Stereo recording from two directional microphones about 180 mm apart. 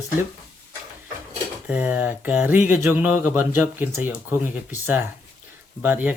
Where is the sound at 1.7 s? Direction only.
5° right (ahead or behind).